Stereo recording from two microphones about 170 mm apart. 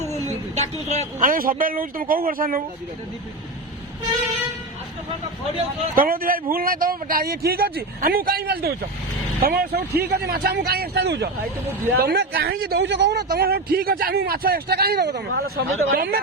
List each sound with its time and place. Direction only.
0.5 s a man's voice: 40° right (ahead or behind); by 2.6 s 60° right (ahead or behind)
6.0 s a man's voice: 60° right (ahead or behind)